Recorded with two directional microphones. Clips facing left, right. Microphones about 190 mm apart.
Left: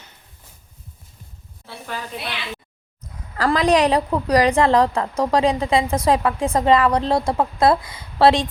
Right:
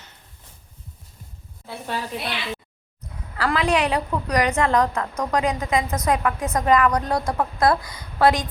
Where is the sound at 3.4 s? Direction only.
40° left (ahead or behind).